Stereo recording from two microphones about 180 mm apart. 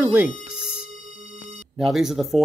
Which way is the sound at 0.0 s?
10° right (ahead or behind).